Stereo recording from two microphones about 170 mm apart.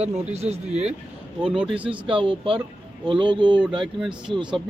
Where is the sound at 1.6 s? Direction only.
5° right (ahead or behind).